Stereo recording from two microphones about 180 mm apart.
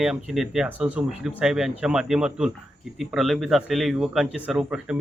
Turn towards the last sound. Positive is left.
turn(degrees=-5)  # may be behind; listen again after turning